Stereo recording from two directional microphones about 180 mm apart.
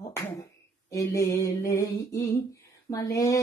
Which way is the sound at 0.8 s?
20° left (ahead or behind).